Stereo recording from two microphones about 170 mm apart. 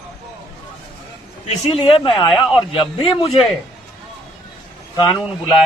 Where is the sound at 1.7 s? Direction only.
35° left (ahead or behind).